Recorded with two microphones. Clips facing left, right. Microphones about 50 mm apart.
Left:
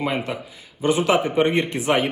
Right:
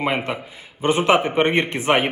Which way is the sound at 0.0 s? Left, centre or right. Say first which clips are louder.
Right 2 dB; right.